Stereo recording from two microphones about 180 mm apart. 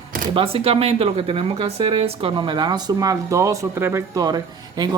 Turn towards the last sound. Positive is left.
turn(degrees=-20)  # may be behind; listen again after turning